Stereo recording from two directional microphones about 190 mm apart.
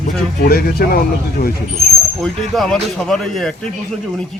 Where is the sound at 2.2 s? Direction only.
Centre (ahead or behind).